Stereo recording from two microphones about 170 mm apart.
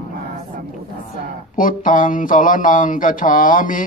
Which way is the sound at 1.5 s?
50° left (ahead or behind).